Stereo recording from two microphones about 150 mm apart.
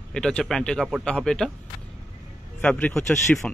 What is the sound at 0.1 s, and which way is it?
Speech, 5° left (ahead or behind).